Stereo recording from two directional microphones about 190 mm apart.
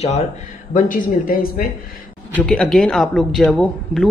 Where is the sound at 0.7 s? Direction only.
45° left (ahead or behind).